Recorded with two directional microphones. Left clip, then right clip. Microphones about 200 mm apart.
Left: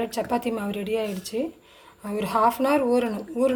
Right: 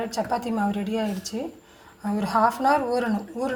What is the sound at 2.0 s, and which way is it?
Speech, 40° left (ahead or behind).